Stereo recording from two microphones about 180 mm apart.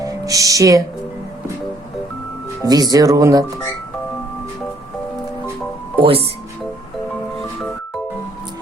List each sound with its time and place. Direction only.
0.0 s music: 20° right (ahead or behind)
2.6 s speech: 20° right (ahead or behind)
6.0 s speech: 30° right (ahead or behind)